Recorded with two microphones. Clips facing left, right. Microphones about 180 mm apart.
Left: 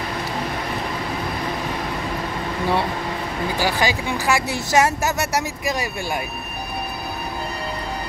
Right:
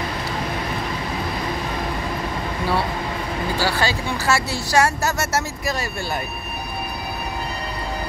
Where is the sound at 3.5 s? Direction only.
15° left (ahead or behind).